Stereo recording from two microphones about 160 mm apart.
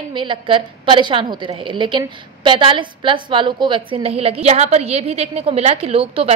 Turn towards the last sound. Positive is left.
turn(degrees=-40)  # may be behind; listen again after turning